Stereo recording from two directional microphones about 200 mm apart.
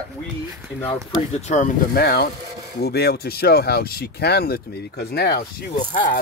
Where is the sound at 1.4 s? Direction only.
35° left (ahead or behind); by 5.5 s 55° left (ahead or behind).